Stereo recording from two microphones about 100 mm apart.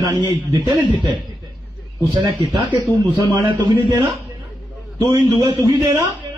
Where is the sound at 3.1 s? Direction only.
35° right (ahead or behind).